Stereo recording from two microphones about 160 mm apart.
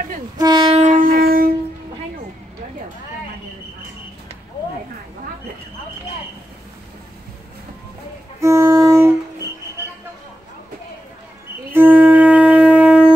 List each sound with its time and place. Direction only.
0.4 s train: 30° right (ahead or behind); by 1.5 s 65° right (ahead or behind)
8.4 s music: 20° right (ahead or behind)
11.7 s wind instrument: 10° right (ahead or behind)